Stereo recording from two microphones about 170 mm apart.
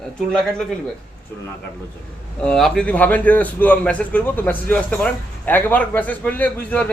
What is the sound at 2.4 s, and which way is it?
A man's voice, centre (ahead or behind).